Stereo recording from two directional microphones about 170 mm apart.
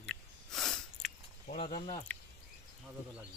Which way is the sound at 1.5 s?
50° left (ahead or behind).